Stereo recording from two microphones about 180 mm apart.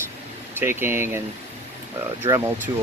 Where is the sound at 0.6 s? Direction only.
15° right (ahead or behind).